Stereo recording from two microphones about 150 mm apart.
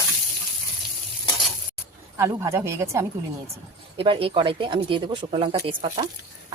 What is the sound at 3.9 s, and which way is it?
Speech, 35° right (ahead or behind).